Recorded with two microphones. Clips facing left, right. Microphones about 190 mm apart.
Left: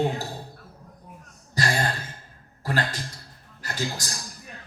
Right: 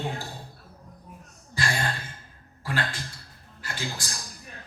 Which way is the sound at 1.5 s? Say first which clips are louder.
Left 3 dB; 40° left (ahead or behind).